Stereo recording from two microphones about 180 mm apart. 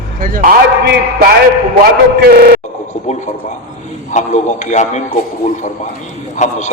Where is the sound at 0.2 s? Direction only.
50° right (ahead or behind).